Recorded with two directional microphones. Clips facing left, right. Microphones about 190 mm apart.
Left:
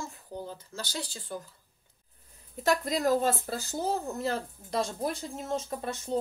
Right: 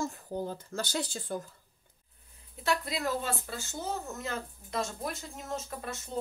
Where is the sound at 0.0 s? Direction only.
50° right (ahead or behind).